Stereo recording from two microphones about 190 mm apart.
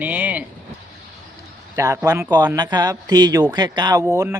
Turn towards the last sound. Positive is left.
turn(degrees=-15)  # may be behind; listen again after turning